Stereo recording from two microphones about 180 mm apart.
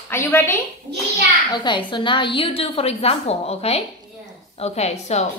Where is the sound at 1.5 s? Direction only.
25° left (ahead or behind).